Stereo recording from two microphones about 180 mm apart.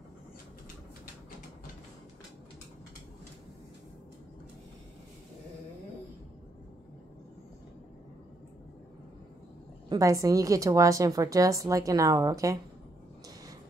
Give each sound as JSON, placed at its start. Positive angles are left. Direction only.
{"t": 9.8, "sound": "a woman's voice", "side_deg": -20}